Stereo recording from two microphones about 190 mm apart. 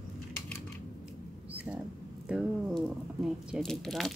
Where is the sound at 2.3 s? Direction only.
5° right (ahead or behind).